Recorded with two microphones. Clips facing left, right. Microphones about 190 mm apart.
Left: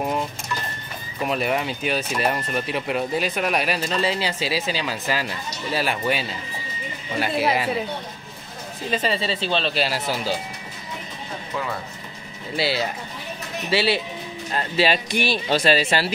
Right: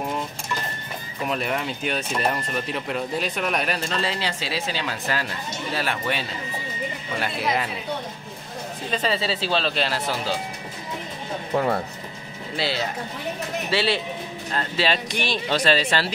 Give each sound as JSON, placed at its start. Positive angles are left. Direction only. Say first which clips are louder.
{"t": 1.3, "sound": "speech", "louder": "left 3 dB", "side_deg": 5}
{"t": 8.9, "sound": "speech", "louder": "left 1 dB", "side_deg": 0}
{"t": 11.5, "sound": "speech", "louder": "right 7 dB", "side_deg": -45}
{"t": 12.5, "sound": "speech", "louder": "left 2 dB", "side_deg": 5}